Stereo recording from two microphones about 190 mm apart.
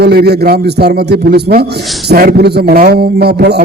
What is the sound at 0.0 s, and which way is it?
A man's voice, 60° right (ahead or behind).